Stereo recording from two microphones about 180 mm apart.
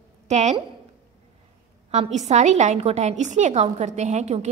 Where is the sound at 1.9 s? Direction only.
35° right (ahead or behind).